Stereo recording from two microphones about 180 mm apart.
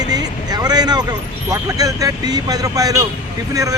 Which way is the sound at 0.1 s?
20° right (ahead or behind).